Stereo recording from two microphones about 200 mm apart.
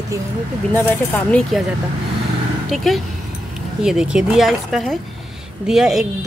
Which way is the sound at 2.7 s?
Centre (ahead or behind).